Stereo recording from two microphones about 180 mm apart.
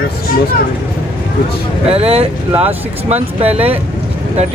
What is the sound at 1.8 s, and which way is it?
Speech, 35° right (ahead or behind).